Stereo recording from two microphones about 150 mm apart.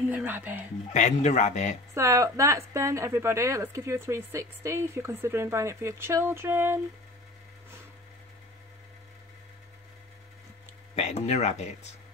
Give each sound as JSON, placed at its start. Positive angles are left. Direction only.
{"t": 0.1, "sound": "a woman's voice", "side_deg": -10}
{"t": 0.9, "sound": "speech", "side_deg": 50}
{"t": 2.0, "sound": "a woman's voice", "side_deg": -20}
{"t": 11.0, "sound": "speech", "side_deg": 45}